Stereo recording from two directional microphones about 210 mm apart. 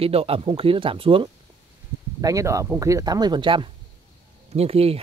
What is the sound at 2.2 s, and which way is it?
Speech, 15° right (ahead or behind).